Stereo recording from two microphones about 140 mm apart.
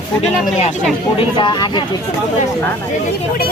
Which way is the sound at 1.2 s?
35° left (ahead or behind).